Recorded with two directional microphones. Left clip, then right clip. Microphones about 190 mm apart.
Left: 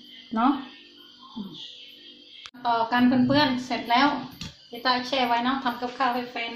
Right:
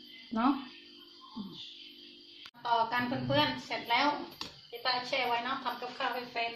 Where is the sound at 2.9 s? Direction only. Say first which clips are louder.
Left 9 dB; 30° left (ahead or behind).